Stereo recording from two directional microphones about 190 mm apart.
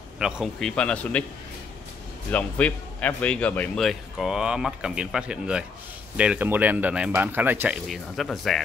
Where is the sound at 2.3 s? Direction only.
5° left (ahead or behind).